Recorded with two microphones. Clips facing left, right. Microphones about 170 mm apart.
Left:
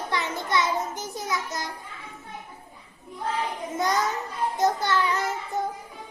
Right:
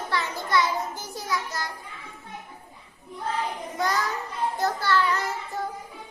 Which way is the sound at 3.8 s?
20° left (ahead or behind).